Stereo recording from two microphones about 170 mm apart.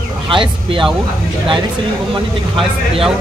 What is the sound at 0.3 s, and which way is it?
Speech, 30° right (ahead or behind).